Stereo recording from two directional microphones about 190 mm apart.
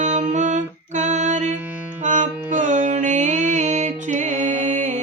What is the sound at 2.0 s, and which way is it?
Music, 40° right (ahead or behind).